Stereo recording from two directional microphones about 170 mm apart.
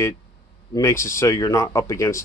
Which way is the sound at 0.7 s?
15° left (ahead or behind).